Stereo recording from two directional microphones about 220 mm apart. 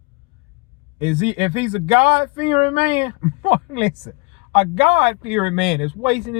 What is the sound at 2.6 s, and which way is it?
Speech, 30° right (ahead or behind).